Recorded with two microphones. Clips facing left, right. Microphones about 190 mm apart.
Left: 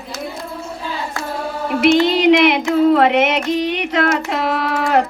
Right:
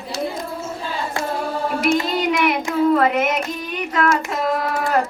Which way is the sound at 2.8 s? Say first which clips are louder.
Left 3 dB; 70° left (ahead or behind).